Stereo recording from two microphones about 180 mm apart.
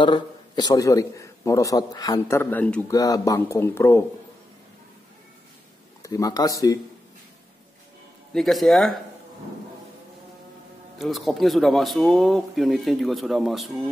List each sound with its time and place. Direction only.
0.0 s a man's voice: 25° left (ahead or behind); by 2.8 s 10° left (ahead or behind)
2.9 s a man's voice: 20° left (ahead or behind)
6.0 s speech: 20° left (ahead or behind)
8.3 s speech: centre (ahead or behind)
11.0 s speech: centre (ahead or behind)